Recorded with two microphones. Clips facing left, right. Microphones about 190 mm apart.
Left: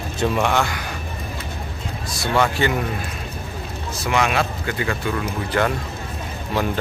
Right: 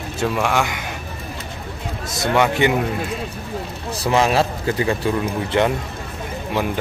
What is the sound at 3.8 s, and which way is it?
Speech, 35° right (ahead or behind).